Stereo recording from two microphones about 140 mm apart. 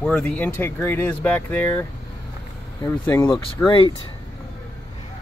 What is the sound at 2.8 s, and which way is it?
Speech, 15° left (ahead or behind).